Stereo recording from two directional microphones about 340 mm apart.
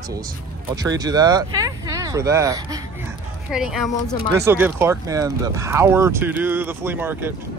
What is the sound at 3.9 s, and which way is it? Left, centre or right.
Speech, centre.